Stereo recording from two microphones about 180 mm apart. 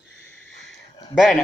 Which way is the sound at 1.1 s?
Centre (ahead or behind).